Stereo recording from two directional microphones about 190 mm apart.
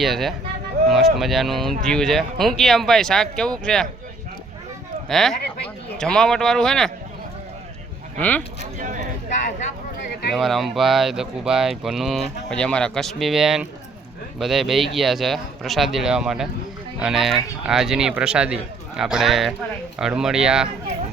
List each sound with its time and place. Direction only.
0.0 s speech: centre (ahead or behind)
5.0 s speech: centre (ahead or behind)
10.3 s speech: centre (ahead or behind)